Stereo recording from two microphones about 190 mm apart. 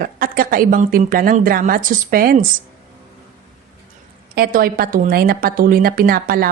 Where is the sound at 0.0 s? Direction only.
50° right (ahead or behind).